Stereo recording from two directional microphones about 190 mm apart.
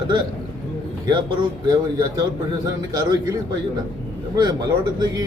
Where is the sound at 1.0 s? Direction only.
20° right (ahead or behind).